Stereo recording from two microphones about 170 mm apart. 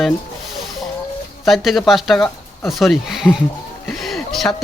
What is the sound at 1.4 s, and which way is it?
Speech, centre (ahead or behind).